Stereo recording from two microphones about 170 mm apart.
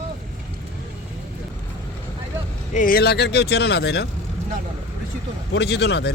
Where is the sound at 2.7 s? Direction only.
55° left (ahead or behind); by 4.1 s 75° left (ahead or behind).